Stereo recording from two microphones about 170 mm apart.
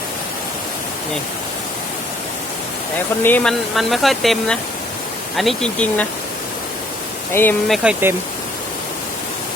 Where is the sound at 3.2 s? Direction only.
5° left (ahead or behind).